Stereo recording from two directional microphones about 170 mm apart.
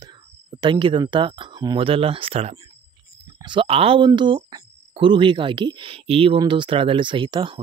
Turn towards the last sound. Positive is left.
turn(degrees=-30)  # may be behind; listen again after turning